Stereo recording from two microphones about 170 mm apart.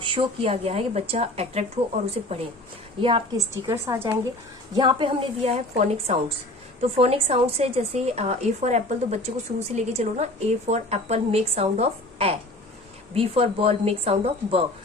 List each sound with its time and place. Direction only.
0.0 s a woman's voice: 30° right (ahead or behind)
3.7 s a woman's voice: 15° right (ahead or behind)
4.8 s a woman's voice: 30° right (ahead or behind)